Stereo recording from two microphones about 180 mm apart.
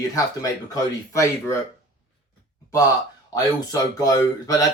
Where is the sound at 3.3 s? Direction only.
20° left (ahead or behind).